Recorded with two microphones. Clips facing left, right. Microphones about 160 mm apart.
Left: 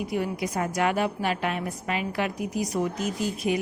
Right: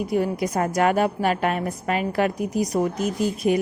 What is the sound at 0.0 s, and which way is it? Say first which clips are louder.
A woman's voice: right 5 dB; 40° right (ahead or behind).